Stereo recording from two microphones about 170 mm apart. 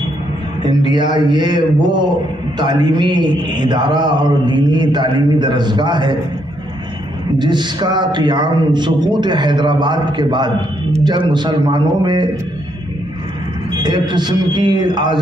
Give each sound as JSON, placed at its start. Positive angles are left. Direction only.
{"t": 0.7, "sound": "a man's voice", "side_deg": -25}
{"t": 7.3, "sound": "a man's voice", "side_deg": -25}
{"t": 13.7, "sound": "a man's voice", "side_deg": -25}